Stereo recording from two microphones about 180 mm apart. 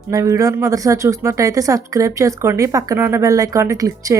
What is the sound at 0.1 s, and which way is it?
Speech, 15° right (ahead or behind).